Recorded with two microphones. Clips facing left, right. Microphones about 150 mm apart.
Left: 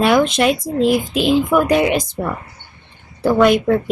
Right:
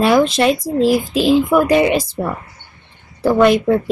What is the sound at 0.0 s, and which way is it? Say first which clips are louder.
Speech: right 1 dB; centre (ahead or behind).